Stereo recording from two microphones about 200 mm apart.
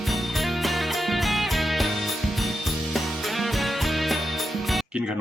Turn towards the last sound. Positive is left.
turn(degrees=-5)  # may be behind; listen again after turning